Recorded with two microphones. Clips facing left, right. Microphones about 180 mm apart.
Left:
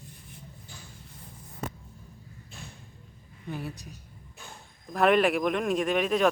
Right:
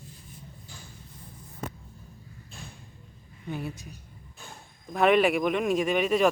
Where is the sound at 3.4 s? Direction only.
Centre (ahead or behind).